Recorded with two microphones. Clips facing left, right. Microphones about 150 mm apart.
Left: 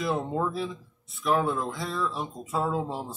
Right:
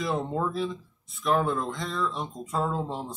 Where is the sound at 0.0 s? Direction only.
Centre (ahead or behind).